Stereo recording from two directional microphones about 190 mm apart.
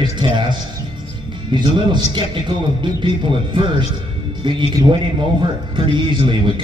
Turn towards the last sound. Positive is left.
turn(degrees=-25)  # may be behind; listen again after turning